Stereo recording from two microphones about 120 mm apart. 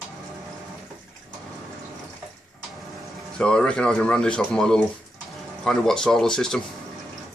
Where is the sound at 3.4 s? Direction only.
10° left (ahead or behind).